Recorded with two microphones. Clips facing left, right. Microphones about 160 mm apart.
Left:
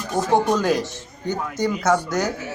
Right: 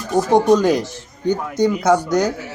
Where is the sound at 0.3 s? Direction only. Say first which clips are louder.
Right 5 dB; 15° right (ahead or behind).